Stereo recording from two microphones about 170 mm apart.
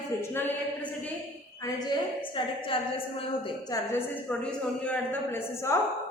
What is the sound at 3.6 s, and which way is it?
A woman's voice, 15° left (ahead or behind).